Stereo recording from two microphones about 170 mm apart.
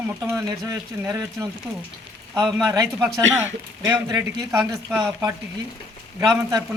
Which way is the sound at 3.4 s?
15° right (ahead or behind).